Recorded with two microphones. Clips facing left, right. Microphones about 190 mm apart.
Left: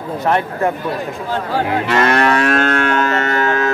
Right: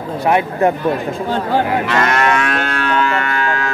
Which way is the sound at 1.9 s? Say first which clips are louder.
Left 1 dB; 30° left (ahead or behind).